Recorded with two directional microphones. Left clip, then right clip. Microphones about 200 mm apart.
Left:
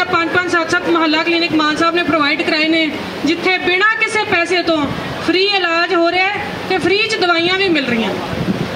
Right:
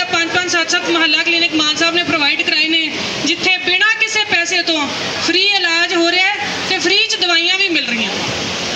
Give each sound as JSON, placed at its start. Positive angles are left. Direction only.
{"t": 0.1, "sound": "speech", "side_deg": 45}